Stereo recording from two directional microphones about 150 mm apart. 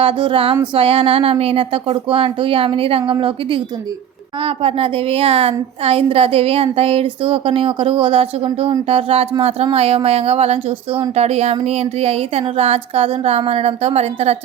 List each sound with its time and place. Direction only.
0.0 s a woman's voice: 35° right (ahead or behind)